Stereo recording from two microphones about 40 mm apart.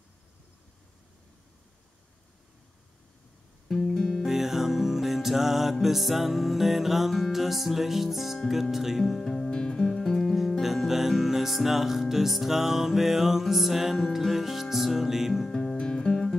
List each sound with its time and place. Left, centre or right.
3.9 s music: centre
4.3 s music: centre
8.7 s speech: centre
9.0 s music: centre
10.6 s music: centre
15.5 s music: centre